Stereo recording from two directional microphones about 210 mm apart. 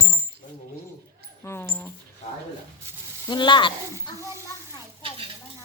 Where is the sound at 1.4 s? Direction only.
10° left (ahead or behind).